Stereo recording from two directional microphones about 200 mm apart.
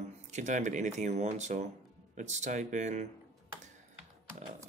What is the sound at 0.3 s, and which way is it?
Speech, 35° right (ahead or behind).